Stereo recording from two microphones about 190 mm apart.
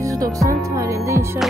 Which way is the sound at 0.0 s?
15° right (ahead or behind).